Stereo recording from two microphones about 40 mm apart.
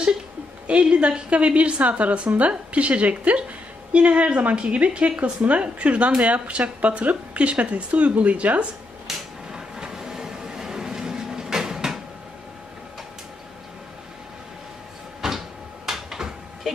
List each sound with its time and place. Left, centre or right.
0.7 s a woman's voice: right
9.0 s vehicle: centre
15.2 s cupboard open or close: centre